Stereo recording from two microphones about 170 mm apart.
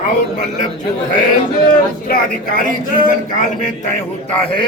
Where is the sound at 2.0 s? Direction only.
55° left (ahead or behind).